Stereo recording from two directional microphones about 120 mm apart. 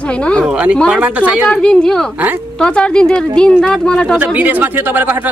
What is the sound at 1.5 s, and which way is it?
Speech, 10° left (ahead or behind).